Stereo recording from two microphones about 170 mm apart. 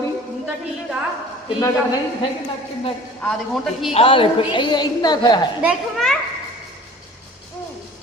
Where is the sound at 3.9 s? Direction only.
30° left (ahead or behind).